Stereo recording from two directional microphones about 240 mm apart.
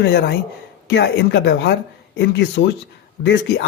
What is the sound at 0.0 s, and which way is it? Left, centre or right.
Speech, left.